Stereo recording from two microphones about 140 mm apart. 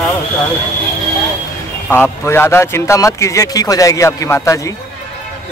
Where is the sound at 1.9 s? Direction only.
15° left (ahead or behind).